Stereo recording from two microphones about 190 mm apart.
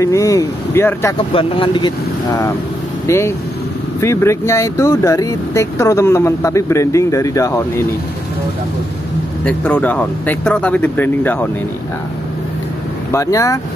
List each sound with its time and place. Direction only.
0.0 s speech: 15° left (ahead or behind)
1.3 s speech: 25° left (ahead or behind)
3.1 s speech: 15° left (ahead or behind)
9.4 s speech: 5° left (ahead or behind)
13.1 s speech: 15° left (ahead or behind)